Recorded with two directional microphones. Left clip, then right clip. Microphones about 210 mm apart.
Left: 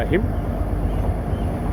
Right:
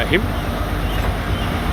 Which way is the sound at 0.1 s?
5° right (ahead or behind).